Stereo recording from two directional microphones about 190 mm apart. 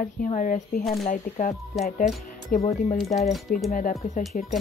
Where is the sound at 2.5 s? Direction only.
40° left (ahead or behind).